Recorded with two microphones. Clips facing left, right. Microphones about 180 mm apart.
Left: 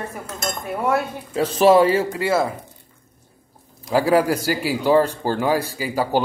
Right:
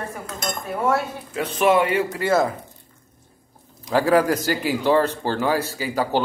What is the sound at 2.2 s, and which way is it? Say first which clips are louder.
Speech: even; 10° left (ahead or behind).